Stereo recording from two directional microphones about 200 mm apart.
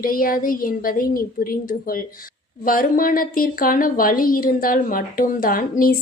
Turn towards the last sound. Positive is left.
turn(degrees=45)  # may be behind; listen again after turning